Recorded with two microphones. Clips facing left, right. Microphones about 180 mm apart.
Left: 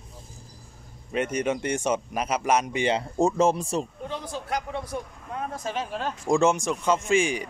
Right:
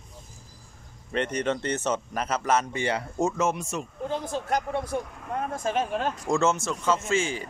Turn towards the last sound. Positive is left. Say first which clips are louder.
# left 3 dB
turn(degrees=15)  # may be behind; listen again after turning